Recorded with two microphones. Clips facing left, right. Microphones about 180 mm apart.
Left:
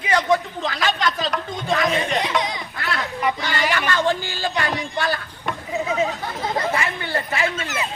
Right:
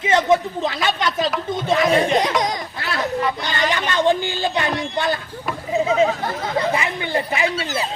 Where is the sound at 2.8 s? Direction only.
20° right (ahead or behind).